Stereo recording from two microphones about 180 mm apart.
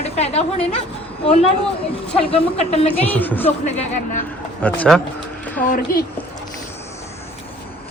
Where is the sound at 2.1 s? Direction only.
35° left (ahead or behind).